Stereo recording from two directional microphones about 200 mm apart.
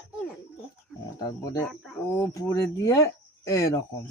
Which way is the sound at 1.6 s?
5° left (ahead or behind).